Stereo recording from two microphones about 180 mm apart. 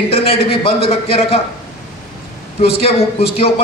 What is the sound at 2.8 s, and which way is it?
Speech, 35° left (ahead or behind).